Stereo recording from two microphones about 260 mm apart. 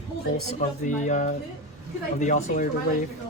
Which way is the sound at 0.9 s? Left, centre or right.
Left.